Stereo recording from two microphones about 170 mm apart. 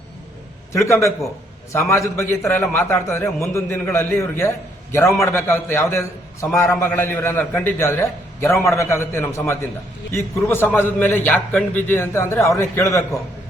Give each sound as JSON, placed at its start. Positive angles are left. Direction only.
{"t": 0.7, "sound": "a man's voice", "side_deg": 15}